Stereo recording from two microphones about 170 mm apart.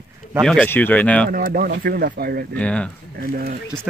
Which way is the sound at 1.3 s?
60° right (ahead or behind).